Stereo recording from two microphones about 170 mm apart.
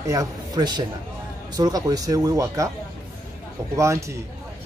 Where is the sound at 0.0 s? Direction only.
20° right (ahead or behind).